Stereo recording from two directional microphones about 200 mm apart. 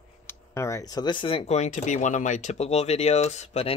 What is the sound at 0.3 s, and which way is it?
Speech, 15° left (ahead or behind).